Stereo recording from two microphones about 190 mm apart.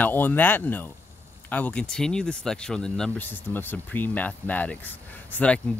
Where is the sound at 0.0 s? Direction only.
10° left (ahead or behind).